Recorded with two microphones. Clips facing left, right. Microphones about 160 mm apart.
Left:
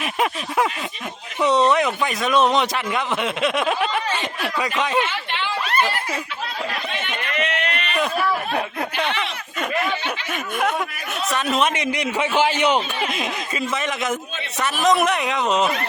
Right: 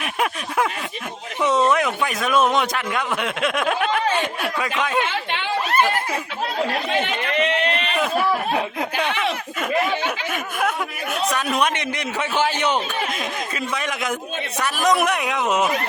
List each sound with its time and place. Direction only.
0.0 s a sound: centre (ahead or behind)
1.4 s a man's voice: centre (ahead or behind)
7.0 s run: 30° right (ahead or behind)
8.5 s snicker: 10° right (ahead or behind)
10.3 s a sound: centre (ahead or behind)
11.3 s a man's voice: centre (ahead or behind)